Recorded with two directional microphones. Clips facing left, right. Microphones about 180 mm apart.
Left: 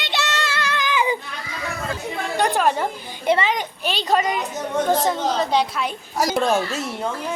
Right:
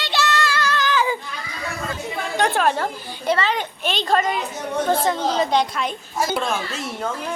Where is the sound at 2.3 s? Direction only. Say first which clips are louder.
Even; 10° left (ahead or behind).